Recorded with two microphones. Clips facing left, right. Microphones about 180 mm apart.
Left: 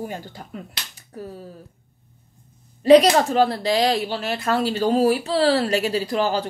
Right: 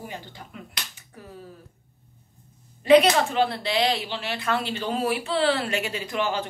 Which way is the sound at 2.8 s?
35° left (ahead or behind).